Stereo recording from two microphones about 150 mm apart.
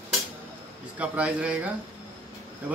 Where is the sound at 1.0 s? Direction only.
10° right (ahead or behind).